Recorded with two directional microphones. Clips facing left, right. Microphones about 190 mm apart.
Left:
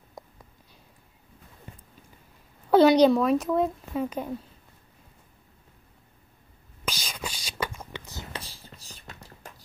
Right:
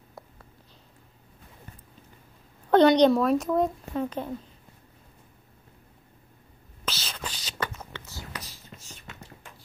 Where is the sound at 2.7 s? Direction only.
5° left (ahead or behind).